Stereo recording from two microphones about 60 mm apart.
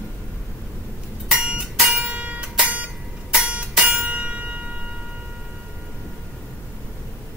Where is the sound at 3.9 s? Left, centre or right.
Right.